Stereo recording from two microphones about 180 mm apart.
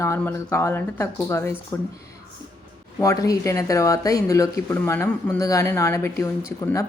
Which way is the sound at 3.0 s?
20° left (ahead or behind).